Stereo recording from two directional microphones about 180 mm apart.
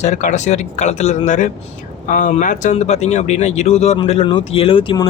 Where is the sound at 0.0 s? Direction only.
40° left (ahead or behind).